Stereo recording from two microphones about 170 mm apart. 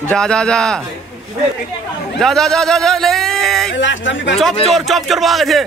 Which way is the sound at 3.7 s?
90° left.